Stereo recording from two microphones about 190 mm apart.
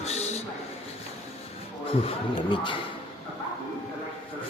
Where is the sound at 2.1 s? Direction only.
25° left (ahead or behind).